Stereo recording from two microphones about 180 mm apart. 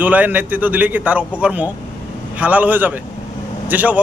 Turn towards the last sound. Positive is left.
turn(degrees=-10)  # may be behind; listen again after turning